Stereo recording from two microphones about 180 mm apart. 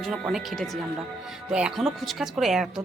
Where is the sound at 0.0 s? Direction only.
Centre (ahead or behind).